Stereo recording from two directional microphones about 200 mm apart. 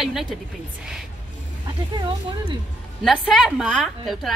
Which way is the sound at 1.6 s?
20° right (ahead or behind).